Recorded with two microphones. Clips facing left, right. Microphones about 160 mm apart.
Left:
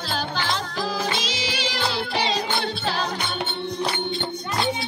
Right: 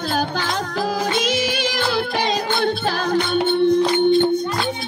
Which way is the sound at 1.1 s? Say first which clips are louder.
Right 8 dB; 55° right (ahead or behind).